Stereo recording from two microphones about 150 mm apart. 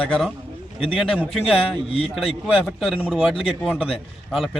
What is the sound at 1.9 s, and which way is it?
Speech, 40° left (ahead or behind).